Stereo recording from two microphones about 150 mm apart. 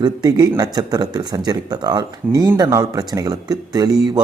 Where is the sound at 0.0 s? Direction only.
25° right (ahead or behind).